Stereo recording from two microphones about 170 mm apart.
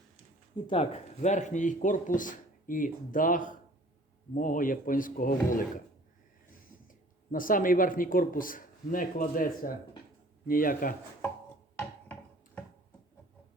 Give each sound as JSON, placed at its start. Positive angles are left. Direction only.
{"t": 0.5, "sound": "speech", "side_deg": 35}
{"t": 6.8, "sound": "speech", "side_deg": 55}